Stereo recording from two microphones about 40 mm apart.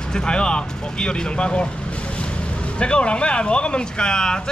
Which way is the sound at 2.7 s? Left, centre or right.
Left.